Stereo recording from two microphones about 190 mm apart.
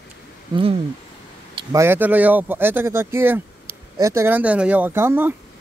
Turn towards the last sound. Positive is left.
turn(degrees=-10)  # may be behind; listen again after turning